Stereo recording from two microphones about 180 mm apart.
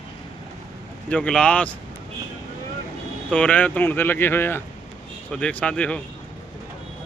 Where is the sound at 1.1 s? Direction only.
5° left (ahead or behind).